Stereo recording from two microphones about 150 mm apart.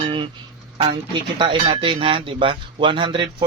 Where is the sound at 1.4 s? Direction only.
35° right (ahead or behind).